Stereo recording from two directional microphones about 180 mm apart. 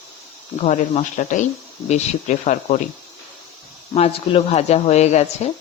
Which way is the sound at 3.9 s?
35° left (ahead or behind).